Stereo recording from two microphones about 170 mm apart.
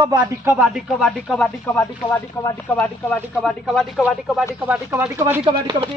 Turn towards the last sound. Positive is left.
turn(degrees=-30)  # may be behind; listen again after turning